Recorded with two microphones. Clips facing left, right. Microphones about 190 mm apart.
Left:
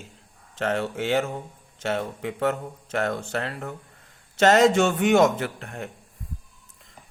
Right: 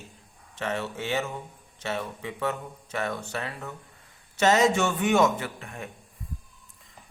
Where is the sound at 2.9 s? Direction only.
90° left.